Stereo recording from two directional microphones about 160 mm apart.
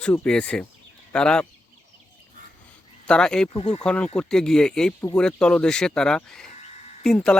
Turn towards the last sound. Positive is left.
turn(degrees=5)  # may be behind; listen again after turning